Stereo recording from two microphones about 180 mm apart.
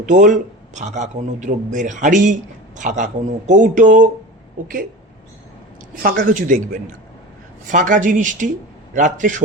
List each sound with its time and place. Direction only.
0.0 s a man's voice: 45° right (ahead or behind)
5.9 s a man's voice: 50° right (ahead or behind)